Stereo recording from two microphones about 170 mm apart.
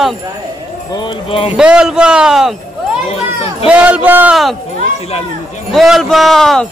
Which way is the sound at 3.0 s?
35° left (ahead or behind).